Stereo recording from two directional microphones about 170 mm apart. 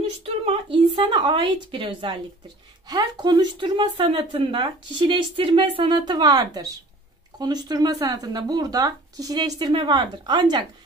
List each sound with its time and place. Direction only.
0.2 s speech: 30° right (ahead or behind)